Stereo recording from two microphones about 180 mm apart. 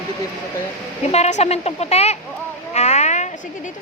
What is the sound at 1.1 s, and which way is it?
Speech, 40° left (ahead or behind).